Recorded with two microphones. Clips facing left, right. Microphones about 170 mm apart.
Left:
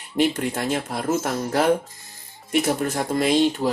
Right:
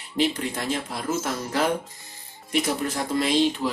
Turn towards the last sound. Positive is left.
turn(degrees=45)  # may be behind; listen again after turning